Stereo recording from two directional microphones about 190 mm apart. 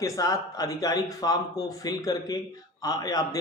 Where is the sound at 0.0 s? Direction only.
15° left (ahead or behind).